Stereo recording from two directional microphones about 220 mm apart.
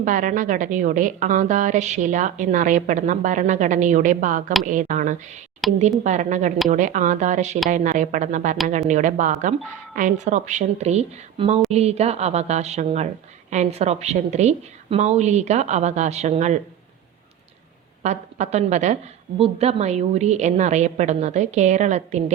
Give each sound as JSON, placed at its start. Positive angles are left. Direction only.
{"t": 0.0, "sound": "a woman's voice", "side_deg": -35}
{"t": 5.6, "sound": "speech", "side_deg": 0}
{"t": 6.0, "sound": "a woman's voice", "side_deg": -35}
{"t": 18.0, "sound": "a woman's voice", "side_deg": -30}